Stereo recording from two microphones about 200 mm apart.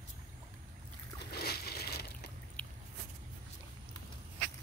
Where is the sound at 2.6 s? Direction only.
5° left (ahead or behind).